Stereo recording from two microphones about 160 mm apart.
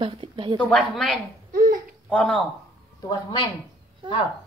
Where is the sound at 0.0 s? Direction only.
35° right (ahead or behind).